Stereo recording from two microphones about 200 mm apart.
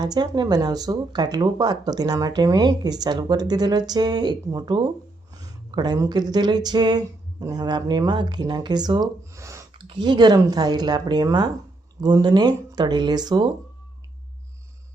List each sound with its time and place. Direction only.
0.0 s speech: 20° right (ahead or behind)